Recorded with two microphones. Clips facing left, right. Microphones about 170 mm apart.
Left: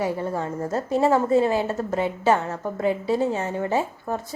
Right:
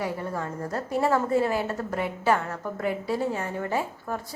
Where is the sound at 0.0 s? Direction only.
25° left (ahead or behind).